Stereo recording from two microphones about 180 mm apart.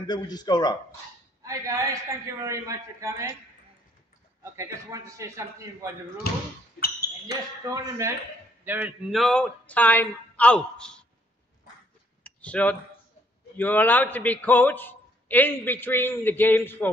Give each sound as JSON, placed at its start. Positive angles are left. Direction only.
{"t": 0.0, "sound": "speech", "side_deg": 25}
{"t": 1.4, "sound": "a man's voice", "side_deg": -15}
{"t": 4.4, "sound": "a man's voice", "side_deg": -15}
{"t": 6.8, "sound": "ping", "side_deg": 65}
{"t": 8.6, "sound": "speech", "side_deg": -10}
{"t": 12.2, "sound": "a sound", "side_deg": 5}
{"t": 13.6, "sound": "a man's voice", "side_deg": 10}